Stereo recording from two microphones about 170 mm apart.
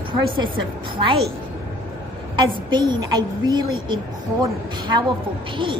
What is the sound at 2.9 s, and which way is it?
A woman's voice, 25° right (ahead or behind).